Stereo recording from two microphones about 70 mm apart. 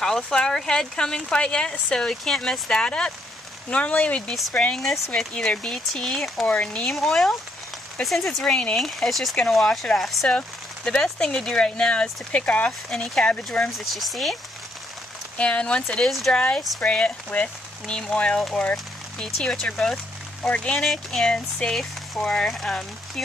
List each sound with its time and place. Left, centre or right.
0.0 s speech: centre
4.7 s speech: centre
5.3 s speech: centre
6.4 s speech: centre
6.9 s speech: centre
10.2 s speech: centre
13.7 s speech: centre
15.3 s speech: centre
16.3 s speech: centre
20.8 s speech: centre